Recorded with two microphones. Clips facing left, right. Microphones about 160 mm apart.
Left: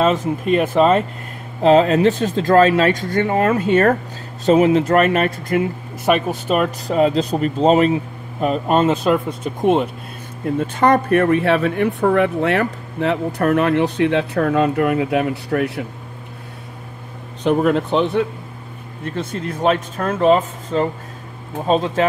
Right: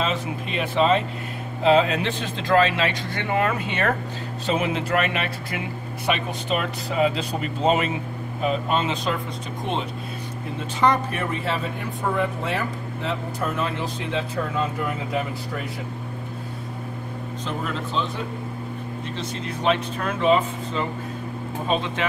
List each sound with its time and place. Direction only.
0.0 s speech: 45° left (ahead or behind)
8.4 s speech: 50° left (ahead or behind); by 15.8 s 70° left (ahead or behind)
17.4 s speech: 65° left (ahead or behind)
19.0 s speech: 50° left (ahead or behind)